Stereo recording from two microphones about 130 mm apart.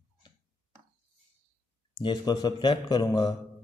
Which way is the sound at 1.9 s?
35° left (ahead or behind).